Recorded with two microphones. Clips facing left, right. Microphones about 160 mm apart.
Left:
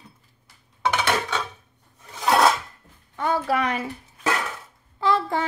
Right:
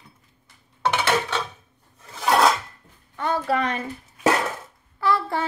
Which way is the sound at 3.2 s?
10° left (ahead or behind).